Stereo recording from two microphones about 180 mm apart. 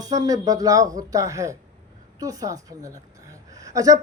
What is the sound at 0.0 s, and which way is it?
A woman's voice, 20° right (ahead or behind).